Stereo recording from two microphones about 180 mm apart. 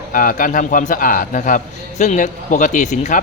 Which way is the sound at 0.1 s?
50° left (ahead or behind).